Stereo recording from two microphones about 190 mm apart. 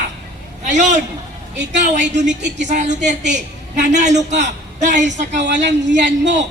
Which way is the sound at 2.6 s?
40° right (ahead or behind).